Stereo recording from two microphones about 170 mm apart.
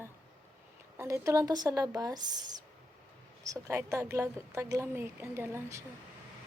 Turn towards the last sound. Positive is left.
turn(degrees=-15)  # may be behind; listen again after turning